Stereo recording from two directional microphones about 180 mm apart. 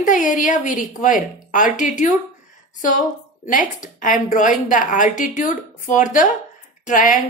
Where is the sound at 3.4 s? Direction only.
45° left (ahead or behind).